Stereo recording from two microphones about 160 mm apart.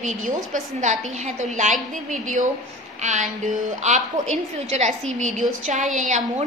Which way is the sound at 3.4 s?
50° right (ahead or behind).